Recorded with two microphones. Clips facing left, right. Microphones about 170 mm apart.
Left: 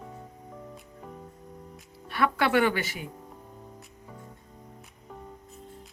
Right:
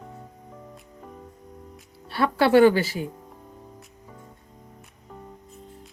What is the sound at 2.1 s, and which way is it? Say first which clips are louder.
Music: right 6 dB; 30° right (ahead or behind).